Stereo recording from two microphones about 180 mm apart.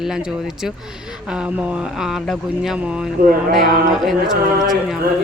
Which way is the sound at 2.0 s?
Centre (ahead or behind).